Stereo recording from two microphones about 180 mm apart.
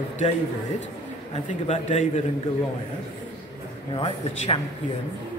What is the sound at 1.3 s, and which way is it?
Speech, 40° left (ahead or behind).